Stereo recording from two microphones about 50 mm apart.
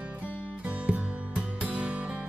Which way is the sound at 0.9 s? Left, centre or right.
Right.